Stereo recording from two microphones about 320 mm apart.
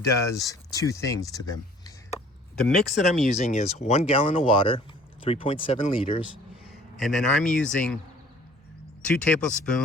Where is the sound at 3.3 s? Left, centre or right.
Left.